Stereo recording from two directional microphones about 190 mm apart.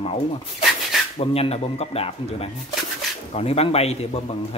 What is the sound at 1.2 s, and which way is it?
Speech, 30° left (ahead or behind).